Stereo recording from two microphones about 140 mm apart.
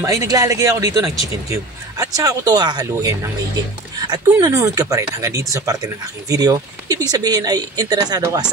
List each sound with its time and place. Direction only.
0.0 s speech: 25° right (ahead or behind)